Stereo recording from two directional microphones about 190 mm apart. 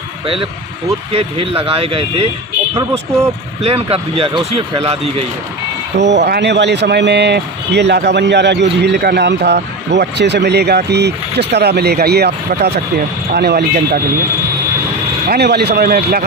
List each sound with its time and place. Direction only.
1.1 s speech: 30° right (ahead or behind)
3.6 s speech: 30° right (ahead or behind)
5.9 s speech: 65° right (ahead or behind)
15.2 s speech: 55° right (ahead or behind)